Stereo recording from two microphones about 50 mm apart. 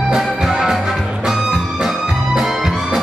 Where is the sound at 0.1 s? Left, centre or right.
Centre.